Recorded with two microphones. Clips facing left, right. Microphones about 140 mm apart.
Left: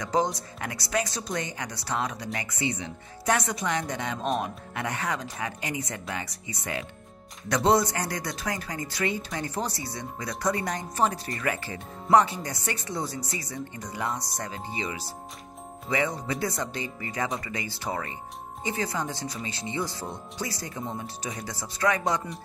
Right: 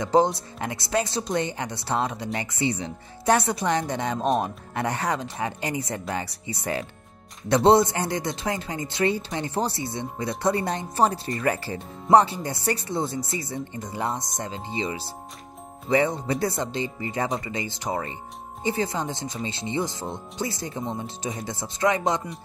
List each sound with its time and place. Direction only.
0.0 s speech: 30° right (ahead or behind)